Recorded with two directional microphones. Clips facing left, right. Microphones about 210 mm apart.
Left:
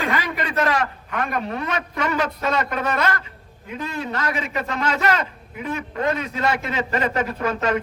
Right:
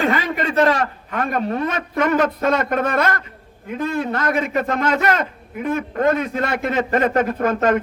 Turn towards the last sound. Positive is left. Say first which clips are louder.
# right 5 dB
turn(degrees=-50)  # may be behind; listen again after turning